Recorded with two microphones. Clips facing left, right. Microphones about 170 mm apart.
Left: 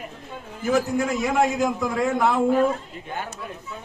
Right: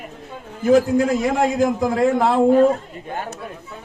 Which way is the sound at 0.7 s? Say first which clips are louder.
Right 7 dB; 30° right (ahead or behind).